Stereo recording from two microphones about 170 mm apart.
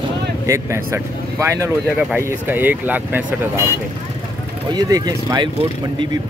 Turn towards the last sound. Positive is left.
turn(degrees=-25)  # may be behind; listen again after turning